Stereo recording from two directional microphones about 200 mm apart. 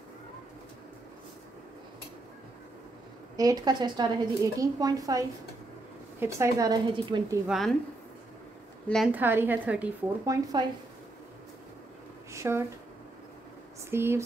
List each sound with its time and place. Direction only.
3.3 s a woman's voice: 20° right (ahead or behind)
7.4 s a woman's voice: centre (ahead or behind)
8.8 s a woman's voice: centre (ahead or behind)
9.1 s a woman's voice: 10° right (ahead or behind)
12.3 s a sound: 15° right (ahead or behind)
13.8 s a woman's voice: 10° right (ahead or behind)